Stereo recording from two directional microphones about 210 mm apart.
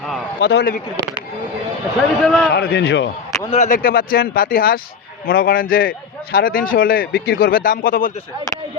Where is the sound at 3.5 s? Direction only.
35° left (ahead or behind).